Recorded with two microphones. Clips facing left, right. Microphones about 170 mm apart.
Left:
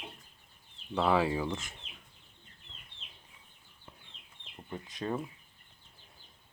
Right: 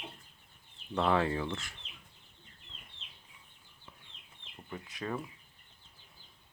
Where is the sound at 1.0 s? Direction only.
5° left (ahead or behind).